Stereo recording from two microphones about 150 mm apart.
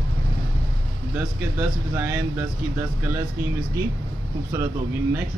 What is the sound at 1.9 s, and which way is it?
Speech, 15° right (ahead or behind).